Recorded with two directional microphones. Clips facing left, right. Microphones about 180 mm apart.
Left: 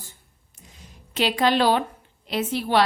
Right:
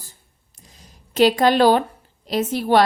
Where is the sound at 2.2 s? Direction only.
40° right (ahead or behind).